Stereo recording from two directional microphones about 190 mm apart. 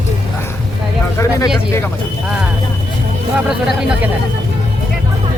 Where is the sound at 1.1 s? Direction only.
15° left (ahead or behind).